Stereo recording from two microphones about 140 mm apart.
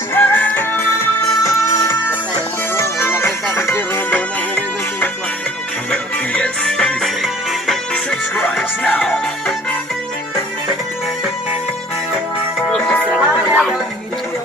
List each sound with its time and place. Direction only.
0.1 s music: 15° left (ahead or behind)
13.1 s music: 10° right (ahead or behind)